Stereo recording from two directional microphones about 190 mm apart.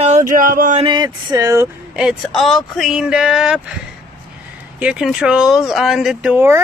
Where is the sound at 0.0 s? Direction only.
40° right (ahead or behind).